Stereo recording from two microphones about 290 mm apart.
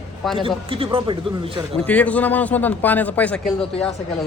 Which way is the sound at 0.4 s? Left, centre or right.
Centre.